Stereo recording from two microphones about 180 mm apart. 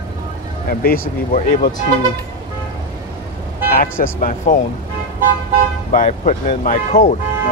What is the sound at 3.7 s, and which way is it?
Speech, 50° left (ahead or behind).